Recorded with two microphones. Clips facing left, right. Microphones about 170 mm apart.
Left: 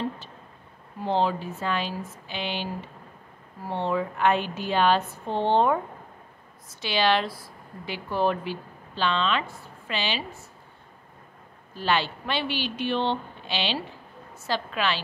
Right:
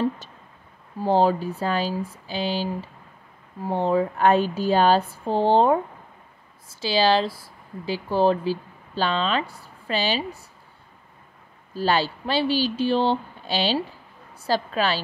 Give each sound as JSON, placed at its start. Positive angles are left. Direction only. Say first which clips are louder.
{"t": 0.9, "sound": "speech", "louder": "right 5 dB", "side_deg": -40}
{"t": 6.8, "sound": "speech", "louder": "right 4 dB", "side_deg": -30}
{"t": 11.7, "sound": "speech", "louder": "right 3 dB", "side_deg": -35}